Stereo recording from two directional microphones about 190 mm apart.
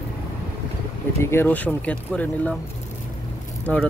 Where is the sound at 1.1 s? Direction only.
15° left (ahead or behind).